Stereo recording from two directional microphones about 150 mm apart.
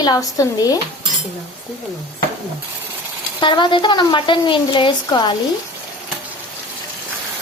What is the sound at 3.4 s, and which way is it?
A woman's voice, 30° left (ahead or behind).